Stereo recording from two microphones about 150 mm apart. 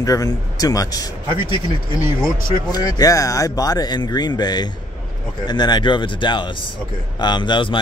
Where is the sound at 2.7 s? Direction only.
25° left (ahead or behind).